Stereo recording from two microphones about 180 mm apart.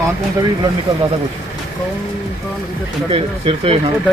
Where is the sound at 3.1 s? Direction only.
30° right (ahead or behind).